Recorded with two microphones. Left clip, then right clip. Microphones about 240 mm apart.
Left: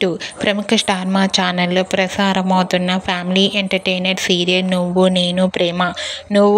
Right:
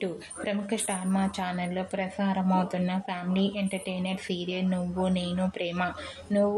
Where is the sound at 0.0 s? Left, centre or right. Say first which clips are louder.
Left 15 dB; left.